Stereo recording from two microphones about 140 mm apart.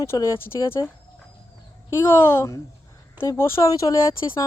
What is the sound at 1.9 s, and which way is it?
Speech, 20° left (ahead or behind).